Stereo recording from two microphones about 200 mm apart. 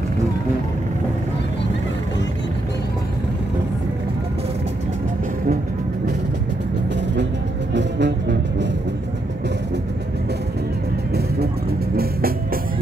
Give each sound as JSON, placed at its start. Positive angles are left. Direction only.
{"t": 7.7, "sound": "music", "side_deg": -60}
{"t": 12.0, "sound": "music", "side_deg": -50}